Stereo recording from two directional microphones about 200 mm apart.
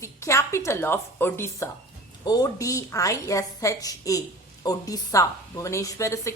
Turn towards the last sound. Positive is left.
turn(degrees=15)  # may be behind; listen again after turning